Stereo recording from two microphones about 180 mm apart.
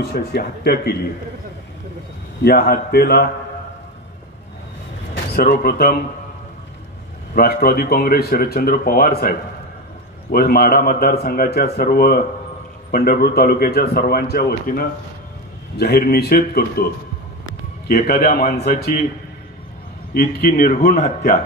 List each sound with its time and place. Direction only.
0.0 s speech: 60° left (ahead or behind)
2.4 s speech: 55° left (ahead or behind)
5.1 s speech: 60° left (ahead or behind)
7.3 s speech: 55° left (ahead or behind)
17.8 s a man's voice: 55° left (ahead or behind)
20.2 s a man's voice: 50° left (ahead or behind)